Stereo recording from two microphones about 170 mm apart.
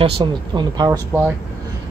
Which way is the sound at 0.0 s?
25° right (ahead or behind).